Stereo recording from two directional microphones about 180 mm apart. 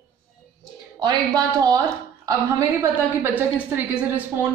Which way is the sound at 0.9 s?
25° right (ahead or behind).